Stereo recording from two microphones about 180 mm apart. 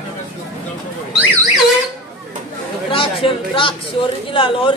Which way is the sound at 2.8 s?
30° left (ahead or behind).